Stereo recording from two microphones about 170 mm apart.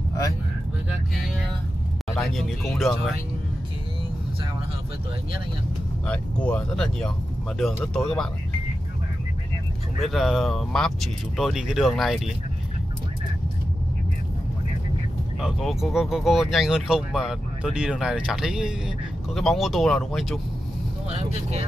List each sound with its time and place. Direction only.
2.1 s speech: centre (ahead or behind)
6.0 s speech: 5° left (ahead or behind)
9.9 s speech: centre (ahead or behind)
15.4 s speech: centre (ahead or behind)
21.1 s speech: 40° right (ahead or behind)